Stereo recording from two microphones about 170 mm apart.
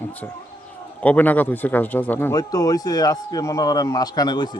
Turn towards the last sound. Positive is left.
turn(degrees=25)  # may be behind; listen again after turning